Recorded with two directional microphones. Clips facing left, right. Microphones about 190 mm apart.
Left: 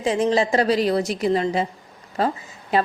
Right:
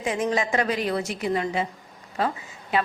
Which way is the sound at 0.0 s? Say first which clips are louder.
Left 5 dB; 30° left (ahead or behind).